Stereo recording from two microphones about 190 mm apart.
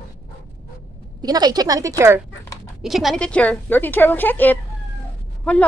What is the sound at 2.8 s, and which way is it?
A woman's voice, centre (ahead or behind).